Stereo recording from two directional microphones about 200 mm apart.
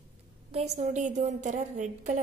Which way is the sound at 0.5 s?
35° right (ahead or behind).